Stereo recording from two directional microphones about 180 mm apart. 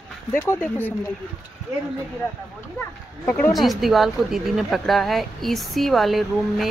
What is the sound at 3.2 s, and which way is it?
Speech, 10° left (ahead or behind).